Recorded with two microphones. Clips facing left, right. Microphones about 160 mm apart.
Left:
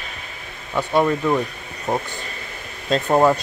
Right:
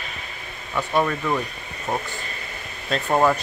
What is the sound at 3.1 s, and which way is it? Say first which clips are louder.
Speech: left 3 dB; 15° left (ahead or behind).